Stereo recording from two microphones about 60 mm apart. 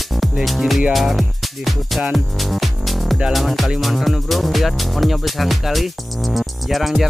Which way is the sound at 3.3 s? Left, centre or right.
Centre.